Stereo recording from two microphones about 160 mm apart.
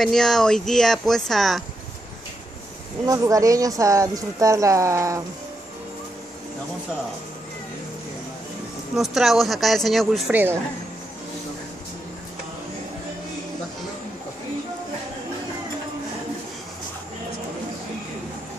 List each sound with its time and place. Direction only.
0.0 s speech: centre (ahead or behind)
3.1 s speech: 20° right (ahead or behind)
8.9 s speech: centre (ahead or behind)
10.3 s a woman's voice: 15° right (ahead or behind)